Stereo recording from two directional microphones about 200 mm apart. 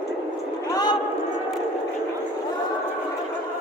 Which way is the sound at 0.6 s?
20° left (ahead or behind).